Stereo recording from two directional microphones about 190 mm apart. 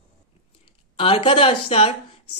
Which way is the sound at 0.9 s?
30° left (ahead or behind).